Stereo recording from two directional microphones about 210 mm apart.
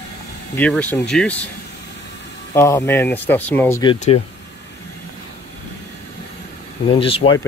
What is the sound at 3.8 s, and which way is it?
Speech, 25° left (ahead or behind).